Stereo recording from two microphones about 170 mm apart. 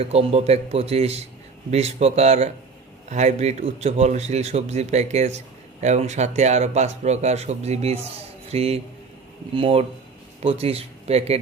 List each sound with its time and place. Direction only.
0.0 s speech: 35° right (ahead or behind)